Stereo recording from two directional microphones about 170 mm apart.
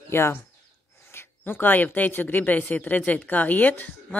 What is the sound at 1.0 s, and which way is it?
Speech, 15° left (ahead or behind).